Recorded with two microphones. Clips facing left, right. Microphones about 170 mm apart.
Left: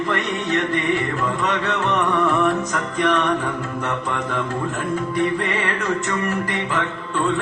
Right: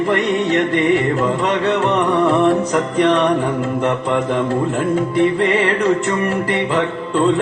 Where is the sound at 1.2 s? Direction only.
25° right (ahead or behind).